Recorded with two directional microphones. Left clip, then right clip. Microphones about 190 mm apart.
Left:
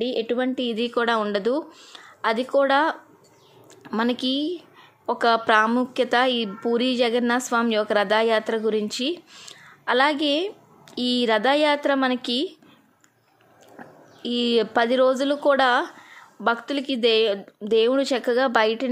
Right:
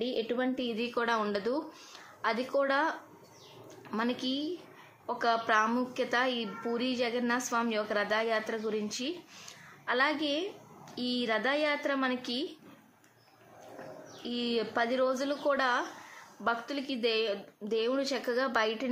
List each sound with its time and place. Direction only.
0.0 s a woman's voice: 45° left (ahead or behind)
14.2 s a woman's voice: 50° left (ahead or behind)